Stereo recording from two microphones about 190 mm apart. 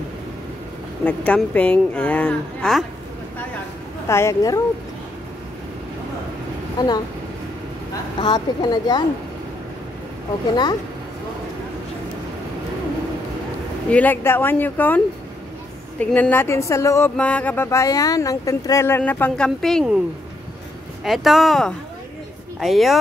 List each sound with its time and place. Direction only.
1.0 s speech: 5° left (ahead or behind)
4.1 s speech: 15° left (ahead or behind)
6.8 s speech: 20° left (ahead or behind)
8.2 s speech: 25° left (ahead or behind)
10.5 s speech: 20° left (ahead or behind)
13.8 s speech: 10° left (ahead or behind)
16.0 s speech: 10° left (ahead or behind)
21.0 s speech: centre (ahead or behind)